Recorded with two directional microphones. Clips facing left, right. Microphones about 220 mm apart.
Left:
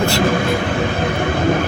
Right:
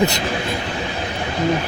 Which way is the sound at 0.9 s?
55° left (ahead or behind).